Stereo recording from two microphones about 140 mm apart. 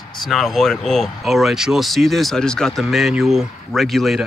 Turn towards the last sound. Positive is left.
turn(degrees=0)  # may be behind; listen again after turning